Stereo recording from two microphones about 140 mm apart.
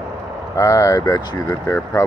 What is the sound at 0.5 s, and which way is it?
Speech, 20° left (ahead or behind).